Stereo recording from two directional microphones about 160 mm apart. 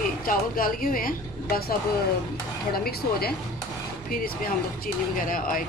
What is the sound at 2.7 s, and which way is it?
Speech, 70° left (ahead or behind).